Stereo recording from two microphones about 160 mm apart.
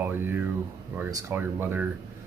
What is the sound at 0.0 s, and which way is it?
Speech, 10° right (ahead or behind).